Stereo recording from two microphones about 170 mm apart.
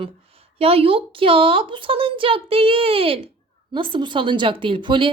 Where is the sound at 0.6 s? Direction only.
35° right (ahead or behind).